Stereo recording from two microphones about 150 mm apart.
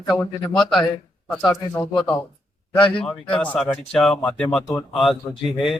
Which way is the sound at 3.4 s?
5° left (ahead or behind).